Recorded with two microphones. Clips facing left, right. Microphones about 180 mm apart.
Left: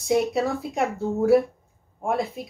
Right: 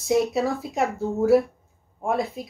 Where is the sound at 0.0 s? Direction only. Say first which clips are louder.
Even; centre (ahead or behind).